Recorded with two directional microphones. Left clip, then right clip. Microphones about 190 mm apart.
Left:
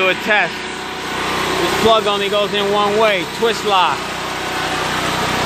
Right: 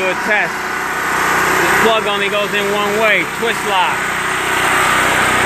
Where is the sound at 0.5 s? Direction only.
30° left (ahead or behind).